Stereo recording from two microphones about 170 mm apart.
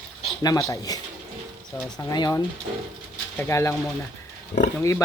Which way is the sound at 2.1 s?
20° left (ahead or behind).